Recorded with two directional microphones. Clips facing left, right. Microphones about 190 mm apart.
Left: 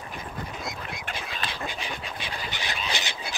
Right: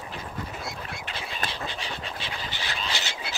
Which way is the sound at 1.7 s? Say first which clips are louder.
Even; 15° left (ahead or behind).